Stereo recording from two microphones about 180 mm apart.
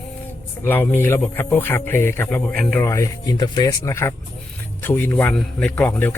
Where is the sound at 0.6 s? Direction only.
10° left (ahead or behind).